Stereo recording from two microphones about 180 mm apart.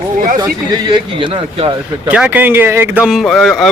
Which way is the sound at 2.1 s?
10° right (ahead or behind).